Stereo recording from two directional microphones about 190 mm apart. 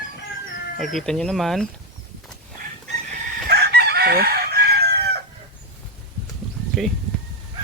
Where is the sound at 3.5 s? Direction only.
55° right (ahead or behind).